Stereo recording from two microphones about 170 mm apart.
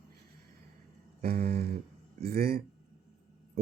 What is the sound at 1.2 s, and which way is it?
Speech, 65° right (ahead or behind).